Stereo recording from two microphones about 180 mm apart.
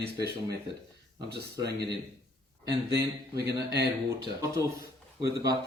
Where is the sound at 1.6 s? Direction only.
70° right (ahead or behind).